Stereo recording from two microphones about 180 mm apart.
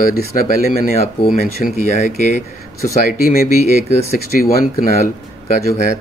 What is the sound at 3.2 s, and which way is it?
Speech, 55° left (ahead or behind).